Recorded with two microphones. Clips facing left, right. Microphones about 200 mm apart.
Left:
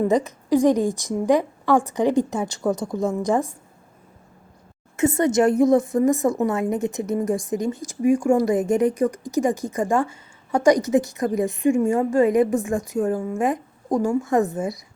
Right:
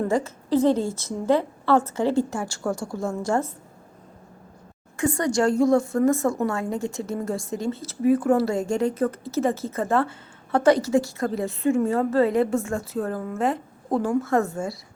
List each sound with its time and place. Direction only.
0.0 s a woman's voice: 15° left (ahead or behind)
4.9 s a woman's voice: 20° left (ahead or behind)